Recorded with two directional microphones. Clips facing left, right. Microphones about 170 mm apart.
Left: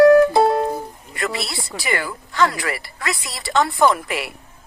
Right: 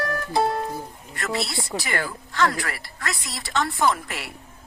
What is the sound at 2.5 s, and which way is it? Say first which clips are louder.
Speech: left 5 dB; 75° left (ahead or behind).